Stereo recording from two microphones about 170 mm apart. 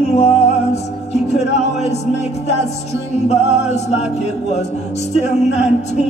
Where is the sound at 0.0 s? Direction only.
40° left (ahead or behind).